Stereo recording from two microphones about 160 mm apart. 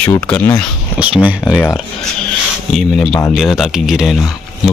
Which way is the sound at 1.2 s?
5° right (ahead or behind).